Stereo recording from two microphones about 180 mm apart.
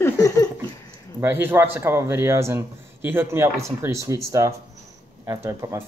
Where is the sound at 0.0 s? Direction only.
20° left (ahead or behind).